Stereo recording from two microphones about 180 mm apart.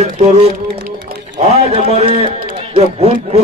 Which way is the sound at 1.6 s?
35° right (ahead or behind).